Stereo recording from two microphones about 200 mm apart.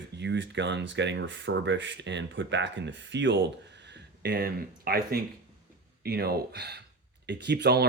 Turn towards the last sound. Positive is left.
turn(degrees=-55)  # may be behind; listen again after turning